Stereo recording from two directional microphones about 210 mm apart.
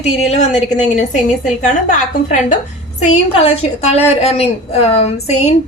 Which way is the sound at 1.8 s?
35° left (ahead or behind).